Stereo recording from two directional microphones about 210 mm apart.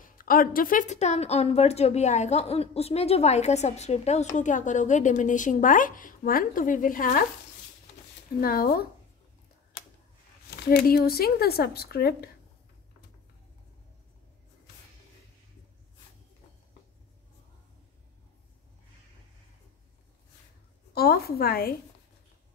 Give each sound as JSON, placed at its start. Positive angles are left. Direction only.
{"t": 0.0, "sound": "a woman's voice", "side_deg": 40}
{"t": 8.4, "sound": "speech", "side_deg": 45}
{"t": 10.5, "sound": "speech", "side_deg": 45}
{"t": 20.9, "sound": "speech", "side_deg": 45}